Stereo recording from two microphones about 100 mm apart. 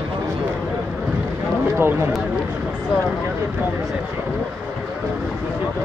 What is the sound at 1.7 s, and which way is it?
Speech, 25° right (ahead or behind).